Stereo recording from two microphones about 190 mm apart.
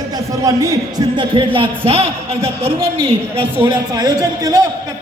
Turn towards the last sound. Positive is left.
turn(degrees=-20)  # may be behind; listen again after turning